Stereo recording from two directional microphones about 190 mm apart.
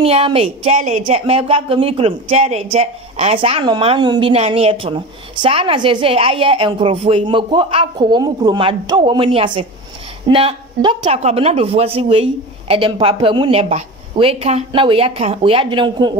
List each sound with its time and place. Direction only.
0.0 s speech: 30° right (ahead or behind)